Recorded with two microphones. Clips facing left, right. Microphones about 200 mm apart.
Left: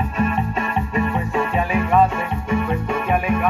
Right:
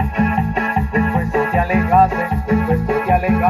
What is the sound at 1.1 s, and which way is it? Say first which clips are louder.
Music: right 4 dB; 35° right (ahead or behind).